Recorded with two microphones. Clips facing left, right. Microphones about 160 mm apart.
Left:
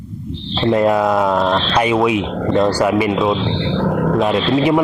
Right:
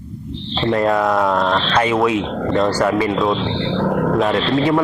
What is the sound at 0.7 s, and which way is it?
Speech, 20° left (ahead or behind).